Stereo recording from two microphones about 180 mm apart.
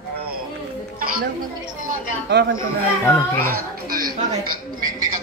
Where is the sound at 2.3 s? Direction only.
70° right (ahead or behind).